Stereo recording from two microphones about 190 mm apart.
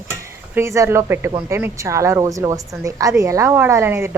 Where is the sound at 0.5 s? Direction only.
15° right (ahead or behind).